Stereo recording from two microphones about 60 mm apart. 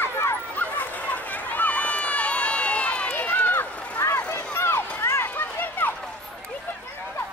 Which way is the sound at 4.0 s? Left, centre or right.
Left.